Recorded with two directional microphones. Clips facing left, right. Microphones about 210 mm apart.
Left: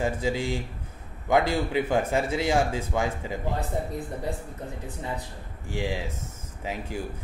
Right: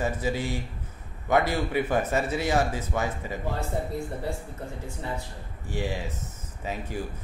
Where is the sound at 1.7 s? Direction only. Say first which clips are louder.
Left 1 dB; 15° left (ahead or behind).